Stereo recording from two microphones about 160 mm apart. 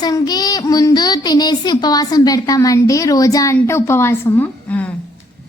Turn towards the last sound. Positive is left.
turn(degrees=10)  # may be behind; listen again after turning